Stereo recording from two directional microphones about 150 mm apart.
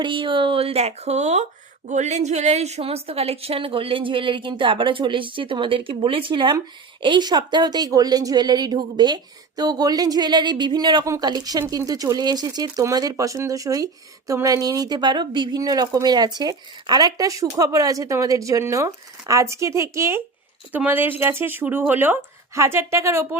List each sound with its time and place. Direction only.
0.0 s a woman's voice: 35° right (ahead or behind); by 23.4 s 20° right (ahead or behind)